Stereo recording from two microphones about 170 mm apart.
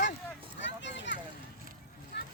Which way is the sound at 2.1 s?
80° left.